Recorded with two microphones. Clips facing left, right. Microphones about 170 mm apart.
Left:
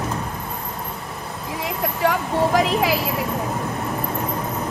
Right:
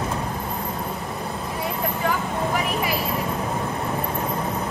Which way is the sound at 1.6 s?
80° left.